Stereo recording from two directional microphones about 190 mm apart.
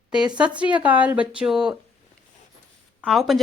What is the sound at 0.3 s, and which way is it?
Speech, 5° right (ahead or behind).